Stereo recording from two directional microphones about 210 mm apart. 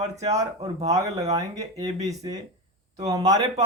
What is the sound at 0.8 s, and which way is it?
Speech, 15° right (ahead or behind).